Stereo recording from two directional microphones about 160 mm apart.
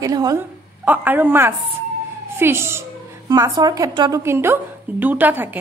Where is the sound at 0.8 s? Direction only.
10° right (ahead or behind).